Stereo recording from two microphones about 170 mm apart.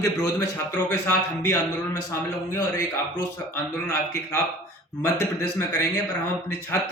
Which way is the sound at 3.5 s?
15° left (ahead or behind).